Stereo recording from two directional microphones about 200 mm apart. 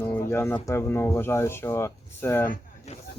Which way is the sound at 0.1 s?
10° left (ahead or behind).